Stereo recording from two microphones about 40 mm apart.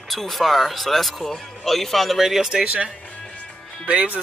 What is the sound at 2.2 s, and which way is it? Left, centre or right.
Speech, centre.